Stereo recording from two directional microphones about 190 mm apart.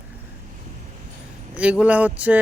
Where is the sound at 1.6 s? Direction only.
5° right (ahead or behind).